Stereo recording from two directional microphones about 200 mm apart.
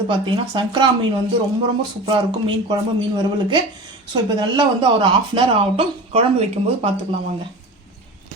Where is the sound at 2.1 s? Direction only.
20° right (ahead or behind).